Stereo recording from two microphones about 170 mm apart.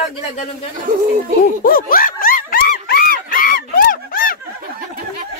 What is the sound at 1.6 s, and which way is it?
Snicker, 55° left (ahead or behind).